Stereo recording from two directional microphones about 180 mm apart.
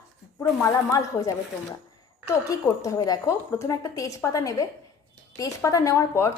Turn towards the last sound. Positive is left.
turn(degrees=15)  # may be behind; listen again after turning